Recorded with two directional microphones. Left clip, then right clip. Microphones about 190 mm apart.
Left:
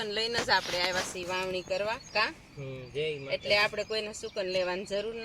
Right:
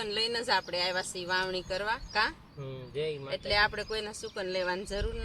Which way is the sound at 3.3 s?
15° right (ahead or behind).